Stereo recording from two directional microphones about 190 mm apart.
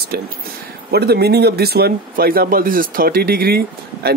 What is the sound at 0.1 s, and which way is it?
Speech, 55° right (ahead or behind).